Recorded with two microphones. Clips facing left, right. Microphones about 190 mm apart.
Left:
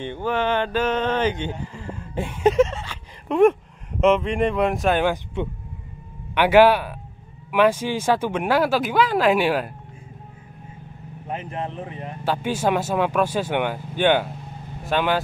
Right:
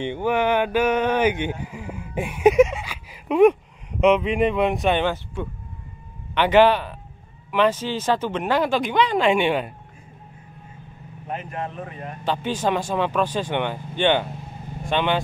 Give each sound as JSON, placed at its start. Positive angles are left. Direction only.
{"t": 0.0, "sound": "speech", "side_deg": -15}
{"t": 5.1, "sound": "speech", "side_deg": 20}
{"t": 6.3, "sound": "speech", "side_deg": 10}
{"t": 11.3, "sound": "speech", "side_deg": 25}
{"t": 12.3, "sound": "speech", "side_deg": 10}